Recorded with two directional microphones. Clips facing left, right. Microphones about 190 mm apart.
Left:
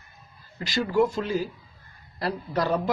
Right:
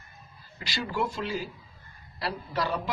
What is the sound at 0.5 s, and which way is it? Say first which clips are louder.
A man's voice: left 8 dB; 45° left (ahead or behind).